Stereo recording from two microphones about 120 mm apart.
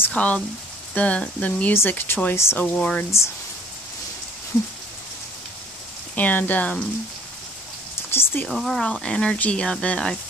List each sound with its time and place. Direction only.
0.0 s rain on surface: 10° left (ahead or behind)
0.9 s speech: 10° left (ahead or behind)
2.6 s speech: 10° left (ahead or behind)
6.1 s speech: 15° left (ahead or behind)
8.1 s speech: 20° left (ahead or behind)
8.5 s speech: 5° left (ahead or behind)